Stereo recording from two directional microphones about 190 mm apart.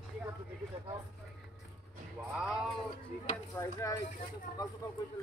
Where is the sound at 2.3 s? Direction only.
5° right (ahead or behind).